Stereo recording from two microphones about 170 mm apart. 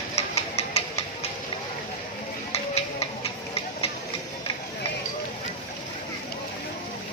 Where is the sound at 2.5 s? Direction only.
35° left (ahead or behind).